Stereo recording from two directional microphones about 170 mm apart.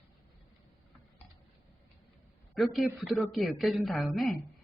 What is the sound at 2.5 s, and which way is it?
Speech, centre (ahead or behind).